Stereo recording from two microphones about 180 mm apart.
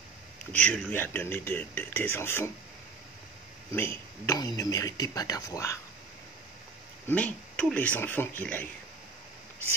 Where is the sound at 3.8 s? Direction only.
15° left (ahead or behind).